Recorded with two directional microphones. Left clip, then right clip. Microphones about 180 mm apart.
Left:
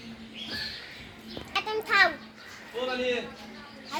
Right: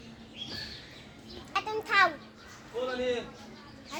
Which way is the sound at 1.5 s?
10° left (ahead or behind).